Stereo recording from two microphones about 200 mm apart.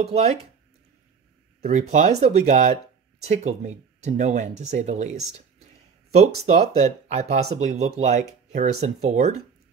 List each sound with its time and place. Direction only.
0.0 s speech: 30° right (ahead or behind)
1.7 s speech: 35° right (ahead or behind)
6.1 s speech: 35° right (ahead or behind)